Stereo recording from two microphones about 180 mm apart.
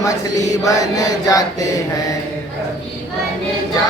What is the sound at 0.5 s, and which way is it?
Mantra, 20° left (ahead or behind).